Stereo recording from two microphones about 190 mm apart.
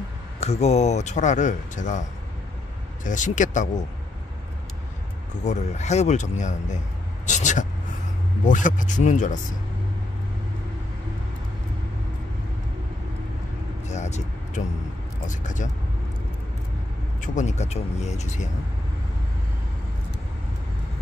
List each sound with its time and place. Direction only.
0.4 s speech: 35° left (ahead or behind)
5.4 s speech: 35° left (ahead or behind)
13.8 s vehicle: 35° left (ahead or behind)
15.2 s speech: 40° left (ahead or behind)
17.2 s speech: 40° left (ahead or behind)